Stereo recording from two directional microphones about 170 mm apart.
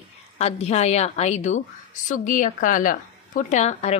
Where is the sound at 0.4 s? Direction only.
40° left (ahead or behind).